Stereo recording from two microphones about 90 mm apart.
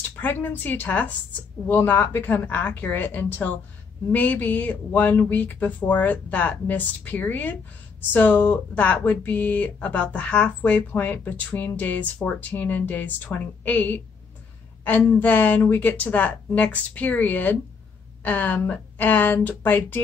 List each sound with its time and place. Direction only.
0.2 s a woman's voice: 20° left (ahead or behind)